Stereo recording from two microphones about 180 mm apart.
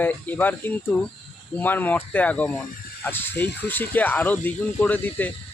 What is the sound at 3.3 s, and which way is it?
Speech, 70° left (ahead or behind).